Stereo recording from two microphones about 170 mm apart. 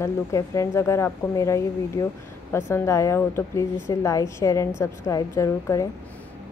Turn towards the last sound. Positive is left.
turn(degrees=20)  # may be behind; listen again after turning